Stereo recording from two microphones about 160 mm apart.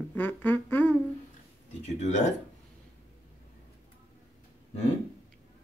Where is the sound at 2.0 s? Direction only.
45° left (ahead or behind).